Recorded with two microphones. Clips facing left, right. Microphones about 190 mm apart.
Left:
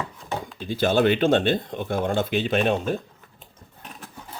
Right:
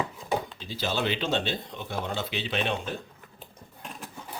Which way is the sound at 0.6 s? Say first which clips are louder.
Left 9 dB; 55° left (ahead or behind).